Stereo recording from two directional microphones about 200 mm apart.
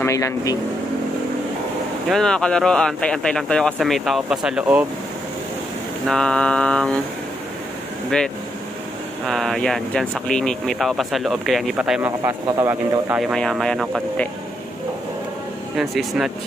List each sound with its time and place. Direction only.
0.0 s speech: 15° left (ahead or behind)
2.0 s speech: 5° left (ahead or behind)
6.0 s speech: 5° left (ahead or behind)
9.2 s speech: centre (ahead or behind)
13.2 s speech: centre (ahead or behind)
15.8 s speech: centre (ahead or behind)